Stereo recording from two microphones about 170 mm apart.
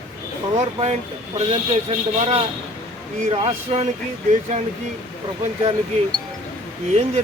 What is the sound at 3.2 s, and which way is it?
Speech, 35° right (ahead or behind).